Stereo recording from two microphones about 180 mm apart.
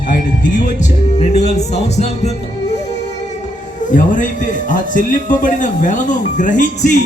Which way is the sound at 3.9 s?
45° left (ahead or behind).